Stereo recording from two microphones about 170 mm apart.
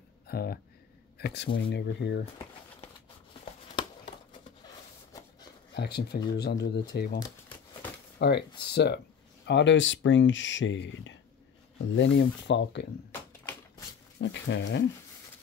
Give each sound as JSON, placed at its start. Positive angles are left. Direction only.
{"t": 0.3, "sound": "speech", "side_deg": 65}
{"t": 1.1, "sound": "speech", "side_deg": 80}
{"t": 5.8, "sound": "speech", "side_deg": 75}
{"t": 8.2, "sound": "speech", "side_deg": 75}
{"t": 9.5, "sound": "speech", "side_deg": 90}
{"t": 13.4, "sound": "tap", "side_deg": 15}
{"t": 14.1, "sound": "speech", "side_deg": 90}